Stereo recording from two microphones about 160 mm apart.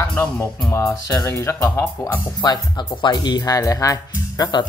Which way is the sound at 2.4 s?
30° left (ahead or behind).